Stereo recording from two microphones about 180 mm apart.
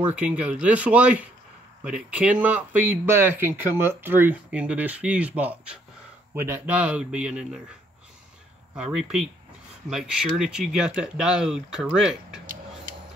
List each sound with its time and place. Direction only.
0.0 s speech: 5° right (ahead or behind)
8.7 s speech: 5° right (ahead or behind)